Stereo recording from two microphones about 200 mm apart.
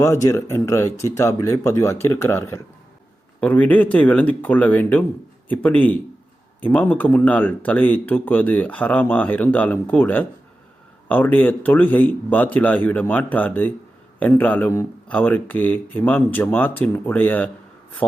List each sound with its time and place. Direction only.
0.0 s speech: 15° left (ahead or behind)